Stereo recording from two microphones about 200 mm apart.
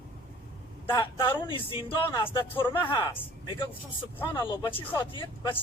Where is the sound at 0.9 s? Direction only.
20° left (ahead or behind).